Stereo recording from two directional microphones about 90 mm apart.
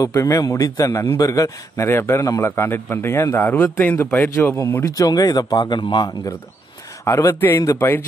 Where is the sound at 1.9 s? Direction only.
30° left (ahead or behind).